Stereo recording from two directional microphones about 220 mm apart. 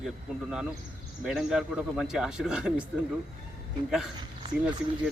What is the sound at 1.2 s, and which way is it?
Speech, centre (ahead or behind).